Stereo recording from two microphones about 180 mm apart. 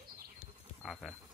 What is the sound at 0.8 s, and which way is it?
Insect, centre (ahead or behind).